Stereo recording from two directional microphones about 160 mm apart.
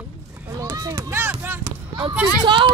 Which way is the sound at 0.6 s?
25° right (ahead or behind).